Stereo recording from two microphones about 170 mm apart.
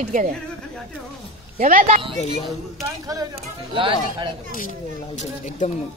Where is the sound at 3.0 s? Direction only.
20° right (ahead or behind).